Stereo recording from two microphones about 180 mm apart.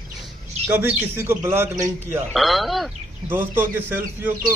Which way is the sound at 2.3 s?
Centre (ahead or behind).